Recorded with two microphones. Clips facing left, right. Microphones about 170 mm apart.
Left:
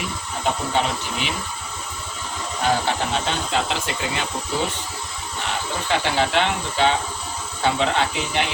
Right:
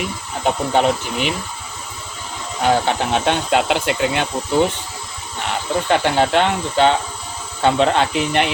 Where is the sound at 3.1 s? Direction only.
60° right (ahead or behind).